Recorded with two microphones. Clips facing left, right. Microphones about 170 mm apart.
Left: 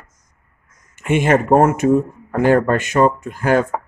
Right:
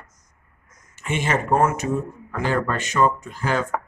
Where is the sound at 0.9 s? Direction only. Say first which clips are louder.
Left 8 dB; 50° left (ahead or behind).